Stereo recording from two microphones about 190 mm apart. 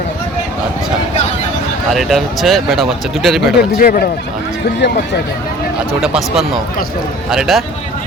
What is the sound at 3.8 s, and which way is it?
Speech, 55° left (ahead or behind).